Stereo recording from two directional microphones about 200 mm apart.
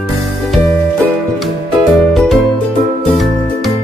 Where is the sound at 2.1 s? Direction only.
Centre (ahead or behind).